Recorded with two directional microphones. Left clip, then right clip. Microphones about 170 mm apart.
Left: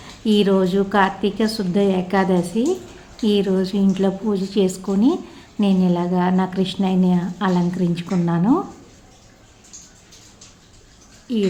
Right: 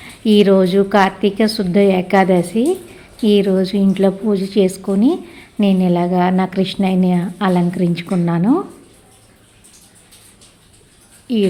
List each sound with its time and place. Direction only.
0.0 s a woman's voice: 25° right (ahead or behind)
11.3 s a woman's voice: 25° right (ahead or behind)